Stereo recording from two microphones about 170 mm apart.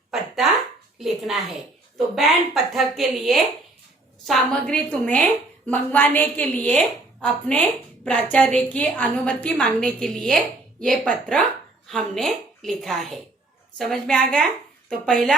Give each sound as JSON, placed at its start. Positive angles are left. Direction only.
{"t": 0.9, "sound": "a woman's voice", "side_deg": 0}